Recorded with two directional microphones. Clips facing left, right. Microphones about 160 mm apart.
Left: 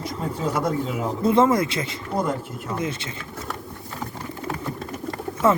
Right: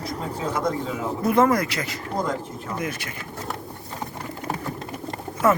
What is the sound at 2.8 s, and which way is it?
Speech, 25° left (ahead or behind).